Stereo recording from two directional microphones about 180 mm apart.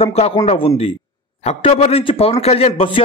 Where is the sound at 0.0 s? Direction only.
35° left (ahead or behind).